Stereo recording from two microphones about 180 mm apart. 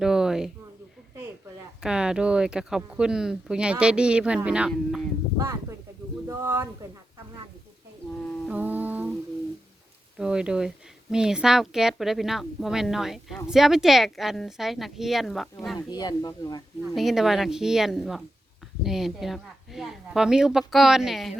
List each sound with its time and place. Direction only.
0.0 s a sound: 5° right (ahead or behind)
1.8 s a woman's voice: 5° right (ahead or behind)
6.2 s a sound: 15° right (ahead or behind)
8.4 s humming: 10° right (ahead or behind)
10.2 s a woman's voice: 5° right (ahead or behind)
15.9 s speech: 20° left (ahead or behind)
16.9 s a woman's voice: centre (ahead or behind)